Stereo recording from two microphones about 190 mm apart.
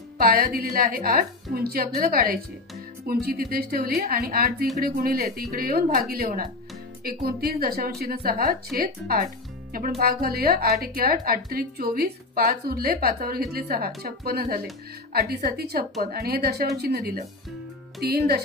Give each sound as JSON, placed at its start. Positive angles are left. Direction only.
{"t": 0.6, "sound": "a woman's voice", "side_deg": -50}